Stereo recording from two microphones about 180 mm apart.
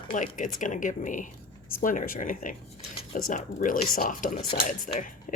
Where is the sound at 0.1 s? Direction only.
45° left (ahead or behind).